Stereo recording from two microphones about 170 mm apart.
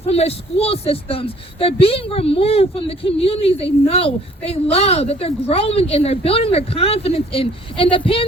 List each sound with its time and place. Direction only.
0.1 s speech: 35° left (ahead or behind)